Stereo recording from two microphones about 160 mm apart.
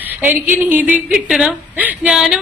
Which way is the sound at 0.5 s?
10° right (ahead or behind).